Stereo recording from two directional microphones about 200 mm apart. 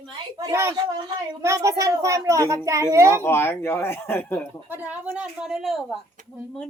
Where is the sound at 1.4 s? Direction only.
15° right (ahead or behind).